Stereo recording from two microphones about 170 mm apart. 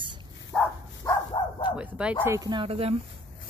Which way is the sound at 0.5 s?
5° left (ahead or behind).